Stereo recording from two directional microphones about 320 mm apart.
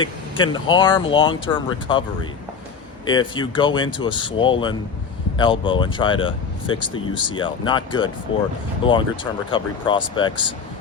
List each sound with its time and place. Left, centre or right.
0.0 s speech: centre
3.1 s speech: centre